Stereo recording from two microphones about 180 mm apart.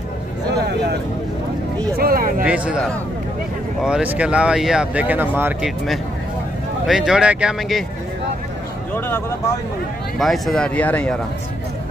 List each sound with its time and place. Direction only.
2.0 s a sound: 55° right (ahead or behind)
2.4 s speech: 5° right (ahead or behind)
3.8 s speech: 5° right (ahead or behind)
6.9 s speech: 5° right (ahead or behind)
8.9 s speech: 10° left (ahead or behind)
10.1 s speech: centre (ahead or behind)